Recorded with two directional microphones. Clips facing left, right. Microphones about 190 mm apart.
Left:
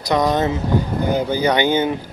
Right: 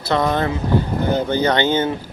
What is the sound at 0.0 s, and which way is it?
Speech, 15° left (ahead or behind).